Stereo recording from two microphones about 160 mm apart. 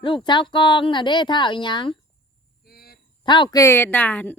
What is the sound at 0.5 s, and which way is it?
Speech, 30° left (ahead or behind).